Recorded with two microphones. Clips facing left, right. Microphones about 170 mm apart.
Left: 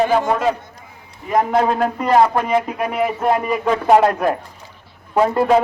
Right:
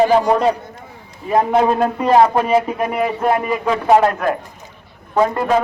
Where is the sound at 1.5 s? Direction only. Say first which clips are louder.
Right 2 dB; 15° right (ahead or behind).